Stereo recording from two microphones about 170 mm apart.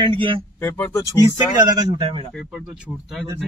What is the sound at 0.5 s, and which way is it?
Speech, 15° left (ahead or behind).